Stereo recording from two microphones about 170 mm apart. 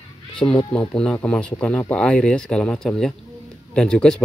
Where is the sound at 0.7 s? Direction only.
5° left (ahead or behind).